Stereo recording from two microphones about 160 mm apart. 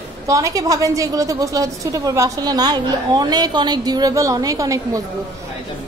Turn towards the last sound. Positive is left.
turn(degrees=-20)  # may be behind; listen again after turning